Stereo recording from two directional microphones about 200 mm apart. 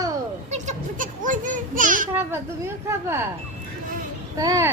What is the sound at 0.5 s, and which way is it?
A child's voice, 35° right (ahead or behind).